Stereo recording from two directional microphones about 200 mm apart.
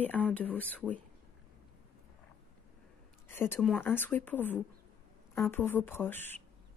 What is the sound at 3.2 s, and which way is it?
Speech, 10° left (ahead or behind).